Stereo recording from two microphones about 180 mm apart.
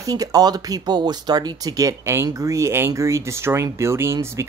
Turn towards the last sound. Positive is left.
turn(degrees=-15)  # may be behind; listen again after turning